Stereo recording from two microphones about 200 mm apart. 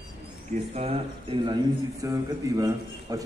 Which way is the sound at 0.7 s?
30° right (ahead or behind).